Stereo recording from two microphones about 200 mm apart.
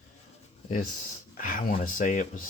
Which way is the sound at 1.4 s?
45° left (ahead or behind).